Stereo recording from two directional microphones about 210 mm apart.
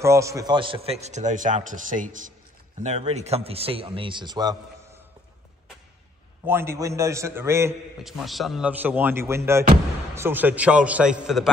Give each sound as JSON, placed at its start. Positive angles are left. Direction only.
{"t": 0.0, "sound": "a man's voice", "side_deg": -15}
{"t": 6.4, "sound": "speech", "side_deg": -10}
{"t": 8.0, "sound": "a man's voice", "side_deg": 0}